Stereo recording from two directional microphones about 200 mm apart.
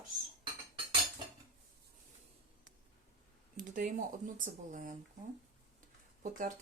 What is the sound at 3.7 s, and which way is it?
Speech, 40° right (ahead or behind).